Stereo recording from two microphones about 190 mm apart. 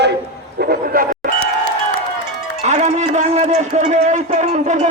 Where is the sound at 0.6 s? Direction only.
55° right (ahead or behind).